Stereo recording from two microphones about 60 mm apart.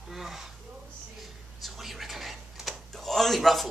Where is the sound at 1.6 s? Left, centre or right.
Centre.